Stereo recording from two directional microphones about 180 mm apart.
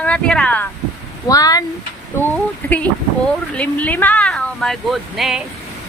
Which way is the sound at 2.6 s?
10° left (ahead or behind).